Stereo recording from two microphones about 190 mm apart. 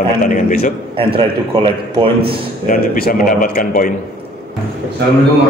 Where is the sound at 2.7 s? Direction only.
50° left (ahead or behind).